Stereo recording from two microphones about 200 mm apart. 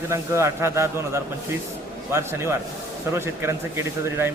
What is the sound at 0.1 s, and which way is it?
Speech, 15° right (ahead or behind).